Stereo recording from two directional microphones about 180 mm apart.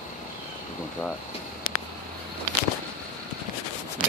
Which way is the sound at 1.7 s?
90° left.